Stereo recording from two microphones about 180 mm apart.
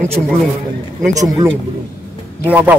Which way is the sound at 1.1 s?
20° right (ahead or behind).